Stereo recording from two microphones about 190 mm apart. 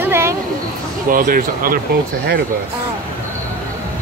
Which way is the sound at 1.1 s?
50° right (ahead or behind).